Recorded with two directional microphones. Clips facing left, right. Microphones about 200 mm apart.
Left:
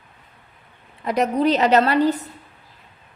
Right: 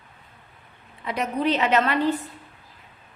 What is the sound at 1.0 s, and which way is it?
A woman's voice, 40° left (ahead or behind).